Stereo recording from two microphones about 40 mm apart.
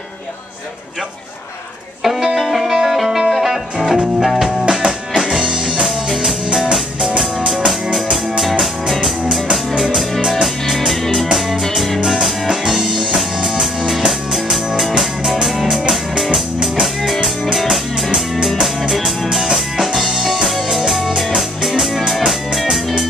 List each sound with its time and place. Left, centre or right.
2.0 s music: centre
4.6 s music: centre
5.9 s music: centre
11.3 s music: centre
12.0 s music: centre
16.8 s music: centre
18.3 s music: centre